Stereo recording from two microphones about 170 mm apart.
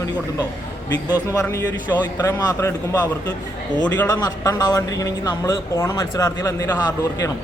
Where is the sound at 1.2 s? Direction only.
20° left (ahead or behind).